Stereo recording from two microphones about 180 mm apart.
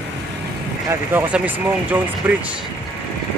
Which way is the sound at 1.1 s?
10° right (ahead or behind).